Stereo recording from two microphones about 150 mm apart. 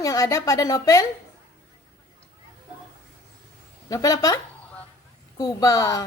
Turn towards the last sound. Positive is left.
turn(degrees=25)  # may be behind; listen again after turning